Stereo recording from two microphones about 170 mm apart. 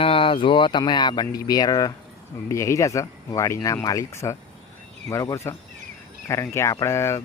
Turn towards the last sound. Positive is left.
turn(degrees=15)  # may be behind; listen again after turning